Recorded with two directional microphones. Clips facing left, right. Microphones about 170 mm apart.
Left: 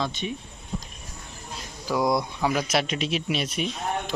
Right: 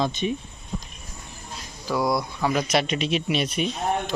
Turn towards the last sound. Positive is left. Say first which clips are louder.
# right 3 dB
turn(degrees=0)  # may be behind; listen again after turning